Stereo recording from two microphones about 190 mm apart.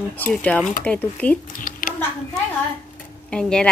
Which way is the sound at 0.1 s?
10° left (ahead or behind).